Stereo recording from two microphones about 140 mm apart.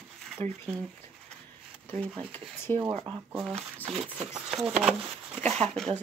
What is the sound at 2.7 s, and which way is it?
Speech, 35° right (ahead or behind).